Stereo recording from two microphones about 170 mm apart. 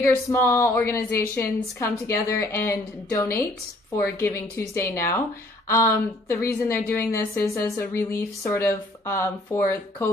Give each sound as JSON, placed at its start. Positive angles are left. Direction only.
{"t": 0.0, "sound": "a woman's voice", "side_deg": 15}